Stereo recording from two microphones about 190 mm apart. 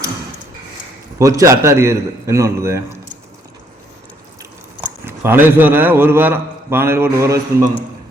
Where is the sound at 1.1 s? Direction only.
15° right (ahead or behind).